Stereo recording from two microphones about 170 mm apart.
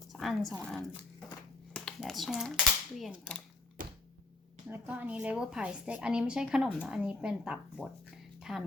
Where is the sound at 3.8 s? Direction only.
55° right (ahead or behind).